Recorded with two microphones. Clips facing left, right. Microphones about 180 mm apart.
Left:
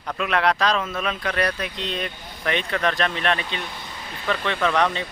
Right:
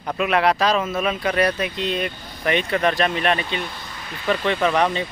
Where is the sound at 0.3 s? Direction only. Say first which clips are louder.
Right 2 dB; 5° right (ahead or behind).